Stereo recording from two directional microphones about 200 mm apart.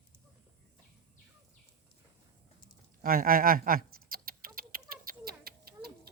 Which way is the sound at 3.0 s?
45° right (ahead or behind).